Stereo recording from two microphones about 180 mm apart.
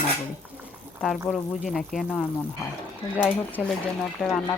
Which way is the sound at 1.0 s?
Centre (ahead or behind).